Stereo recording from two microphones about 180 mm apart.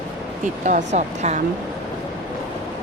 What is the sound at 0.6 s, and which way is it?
Speech, 45° right (ahead or behind).